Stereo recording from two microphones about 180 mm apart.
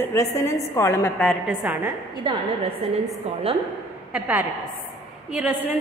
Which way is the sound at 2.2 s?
25° right (ahead or behind).